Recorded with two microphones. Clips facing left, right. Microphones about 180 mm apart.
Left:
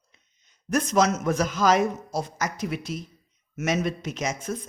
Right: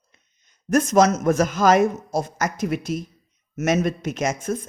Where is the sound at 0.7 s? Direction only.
45° right (ahead or behind).